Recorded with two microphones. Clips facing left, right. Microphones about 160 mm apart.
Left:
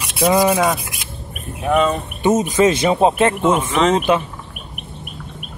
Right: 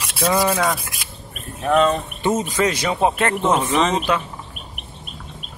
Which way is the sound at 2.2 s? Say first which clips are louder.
Left 6 dB; 20° left (ahead or behind).